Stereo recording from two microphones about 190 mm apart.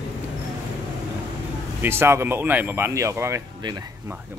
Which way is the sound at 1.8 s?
10° right (ahead or behind).